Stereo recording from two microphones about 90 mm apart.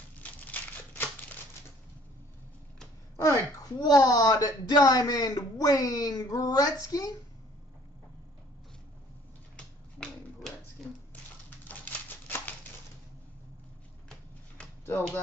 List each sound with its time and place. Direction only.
0.2 s crumpling: 20° left (ahead or behind)
3.2 s speech: 40° left (ahead or behind)
9.6 s finger snapping: 5° left (ahead or behind)
11.6 s a sound: 20° left (ahead or behind)